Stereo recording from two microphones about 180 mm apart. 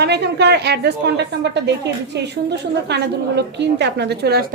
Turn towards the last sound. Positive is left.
turn(degrees=-60)  # may be behind; listen again after turning